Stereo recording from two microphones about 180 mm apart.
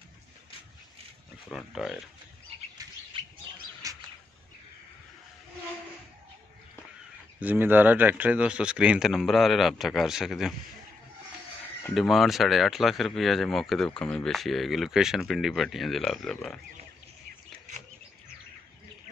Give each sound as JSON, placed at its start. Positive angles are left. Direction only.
{"t": 1.5, "sound": "speech", "side_deg": 0}
{"t": 3.8, "sound": "a sound", "side_deg": -20}
{"t": 7.3, "sound": "speech", "side_deg": -10}
{"t": 11.8, "sound": "speech", "side_deg": 0}